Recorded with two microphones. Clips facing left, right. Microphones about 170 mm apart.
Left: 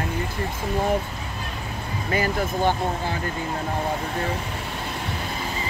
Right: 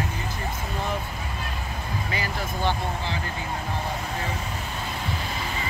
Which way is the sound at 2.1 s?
50° left (ahead or behind).